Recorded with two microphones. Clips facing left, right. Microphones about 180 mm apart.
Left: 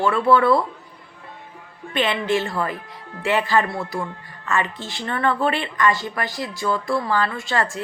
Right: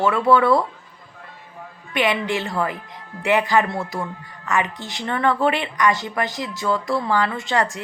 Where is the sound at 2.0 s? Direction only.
15° right (ahead or behind).